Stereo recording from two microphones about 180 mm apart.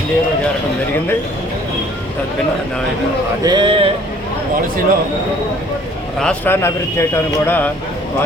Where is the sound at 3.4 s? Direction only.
25° right (ahead or behind).